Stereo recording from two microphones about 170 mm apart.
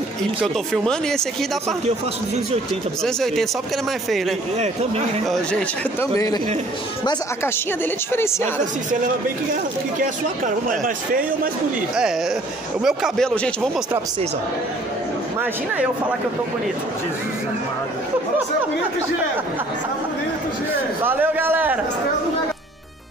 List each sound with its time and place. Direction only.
0.8 s speech: 5° left (ahead or behind)
3.0 s speech: 5° left (ahead or behind)
5.2 s speech: centre (ahead or behind)
5.9 s a man's voice: 20° left (ahead or behind)
9.0 s speech: 50° right (ahead or behind)
12.8 s speech: centre (ahead or behind)
21.0 s a man's voice: 10° right (ahead or behind)